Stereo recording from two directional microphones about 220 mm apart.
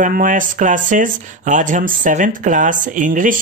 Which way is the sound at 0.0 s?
35° right (ahead or behind).